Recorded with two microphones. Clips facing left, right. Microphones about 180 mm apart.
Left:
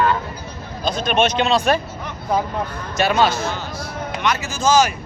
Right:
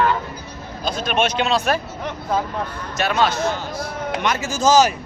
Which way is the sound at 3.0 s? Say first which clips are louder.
Left 2 dB; centre (ahead or behind).